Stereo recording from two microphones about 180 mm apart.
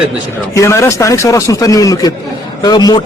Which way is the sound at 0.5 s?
15° left (ahead or behind).